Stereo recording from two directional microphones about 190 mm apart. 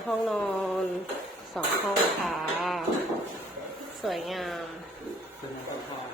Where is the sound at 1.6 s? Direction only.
5° left (ahead or behind).